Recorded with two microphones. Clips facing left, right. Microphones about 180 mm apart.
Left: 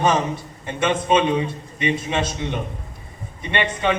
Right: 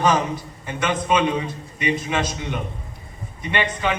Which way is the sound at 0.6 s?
25° left (ahead or behind).